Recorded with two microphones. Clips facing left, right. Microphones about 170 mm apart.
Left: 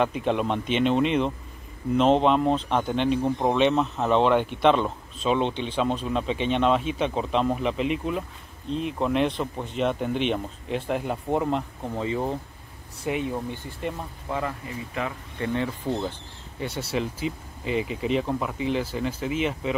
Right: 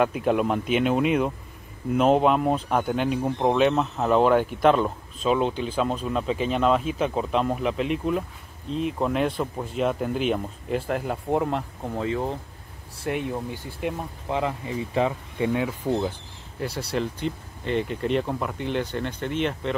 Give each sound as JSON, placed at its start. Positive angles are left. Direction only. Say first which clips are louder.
{"t": 0.0, "sound": "speech", "louder": "right 2 dB", "side_deg": -5}
{"t": 14.3, "sound": "speech", "louder": "right 3 dB", "side_deg": -20}
{"t": 15.3, "sound": "speech", "louder": "left 2 dB", "side_deg": -10}
{"t": 16.5, "sound": "speech", "louder": "right 1 dB", "side_deg": 0}